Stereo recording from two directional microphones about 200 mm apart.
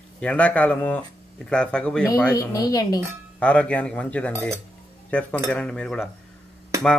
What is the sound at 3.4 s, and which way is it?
Speech, 5° left (ahead or behind).